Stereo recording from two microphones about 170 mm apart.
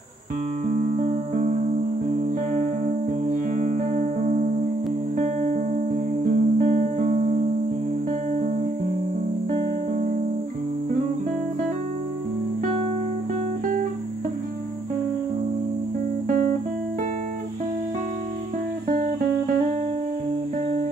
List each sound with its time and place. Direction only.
0.7 s music: 50° right (ahead or behind)
2.5 s music: 50° right (ahead or behind)